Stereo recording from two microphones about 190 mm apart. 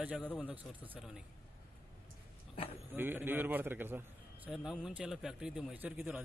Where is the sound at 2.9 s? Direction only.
10° right (ahead or behind).